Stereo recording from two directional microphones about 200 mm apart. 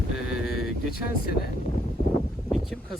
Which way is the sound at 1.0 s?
50° left (ahead or behind).